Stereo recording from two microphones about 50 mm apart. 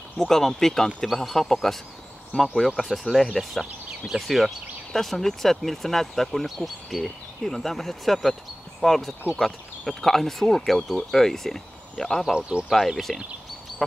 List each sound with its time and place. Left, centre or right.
0.2 s speech: centre
2.3 s speech: centre
2.8 s speech: centre
12.3 s speech: centre
12.6 s speech: centre